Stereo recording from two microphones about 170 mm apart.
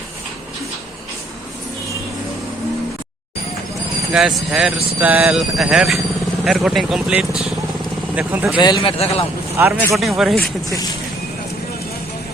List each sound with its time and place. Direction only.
4.1 s speech: centre (ahead or behind)
8.5 s a man's voice: 25° left (ahead or behind)
9.6 s speech: 10° right (ahead or behind)
9.9 s speech: centre (ahead or behind)